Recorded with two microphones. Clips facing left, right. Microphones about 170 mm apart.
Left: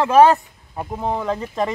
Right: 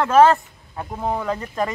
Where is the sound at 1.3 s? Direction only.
Centre (ahead or behind).